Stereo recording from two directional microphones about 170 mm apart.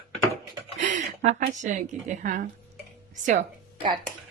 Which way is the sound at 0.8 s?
45° right (ahead or behind).